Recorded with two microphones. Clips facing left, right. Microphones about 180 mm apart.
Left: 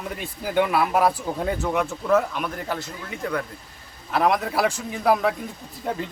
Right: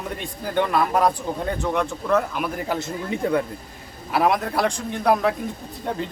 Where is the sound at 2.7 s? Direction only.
25° right (ahead or behind).